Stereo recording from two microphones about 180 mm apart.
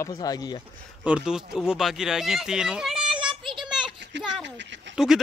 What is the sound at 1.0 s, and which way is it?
A child's voice, 5° right (ahead or behind).